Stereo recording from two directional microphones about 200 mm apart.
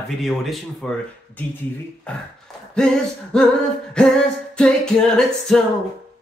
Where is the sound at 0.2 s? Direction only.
Centre (ahead or behind).